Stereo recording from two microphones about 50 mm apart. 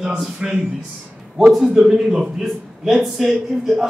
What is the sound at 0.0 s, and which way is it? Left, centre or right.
Speech, centre.